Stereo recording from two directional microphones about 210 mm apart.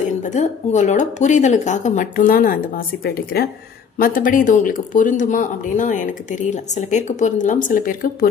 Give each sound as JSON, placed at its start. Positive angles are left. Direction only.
{"t": 0.3, "sound": "speech", "side_deg": 35}